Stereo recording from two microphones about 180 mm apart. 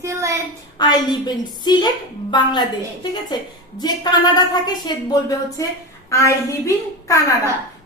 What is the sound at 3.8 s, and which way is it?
A woman's voice, 25° left (ahead or behind).